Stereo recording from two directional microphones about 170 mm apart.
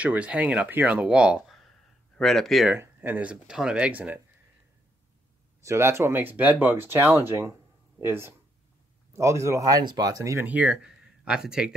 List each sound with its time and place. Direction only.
0.0 s speech: 10° right (ahead or behind)
2.7 s speech: 10° right (ahead or behind)
5.6 s speech: 15° right (ahead or behind)